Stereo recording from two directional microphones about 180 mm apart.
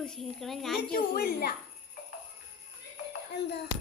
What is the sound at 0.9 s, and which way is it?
Speech, 60° left (ahead or behind).